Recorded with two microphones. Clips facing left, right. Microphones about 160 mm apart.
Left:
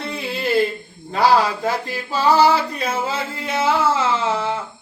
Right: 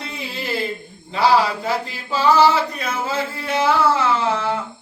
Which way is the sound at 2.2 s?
35° left (ahead or behind).